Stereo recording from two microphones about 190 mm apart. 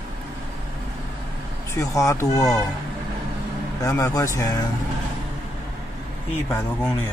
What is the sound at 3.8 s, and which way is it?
Speech, 15° left (ahead or behind).